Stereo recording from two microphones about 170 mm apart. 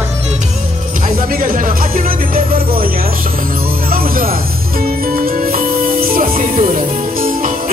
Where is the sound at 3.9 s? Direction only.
60° right (ahead or behind).